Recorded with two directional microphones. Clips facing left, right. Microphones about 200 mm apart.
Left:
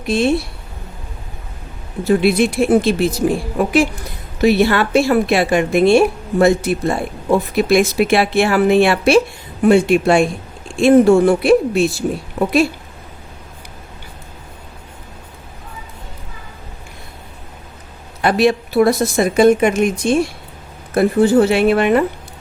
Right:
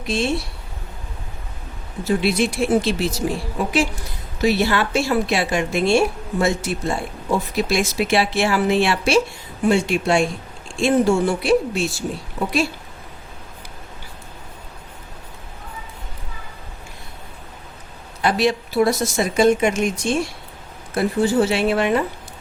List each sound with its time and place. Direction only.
0.0 s speech: 55° left (ahead or behind)
2.0 s speech: 55° left (ahead or behind)
18.2 s speech: 55° left (ahead or behind)